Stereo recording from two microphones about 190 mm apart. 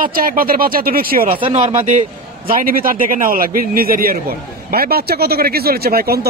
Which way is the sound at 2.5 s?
50° right (ahead or behind).